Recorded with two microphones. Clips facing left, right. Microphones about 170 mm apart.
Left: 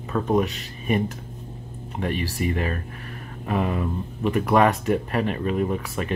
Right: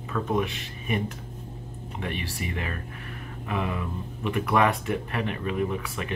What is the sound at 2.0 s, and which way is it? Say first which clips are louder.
Speech: left 7 dB; 40° left (ahead or behind).